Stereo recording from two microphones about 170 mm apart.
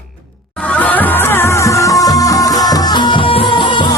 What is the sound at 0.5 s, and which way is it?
Music, 10° left (ahead or behind).